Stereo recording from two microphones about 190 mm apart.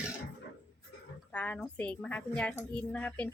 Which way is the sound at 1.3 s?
5° left (ahead or behind).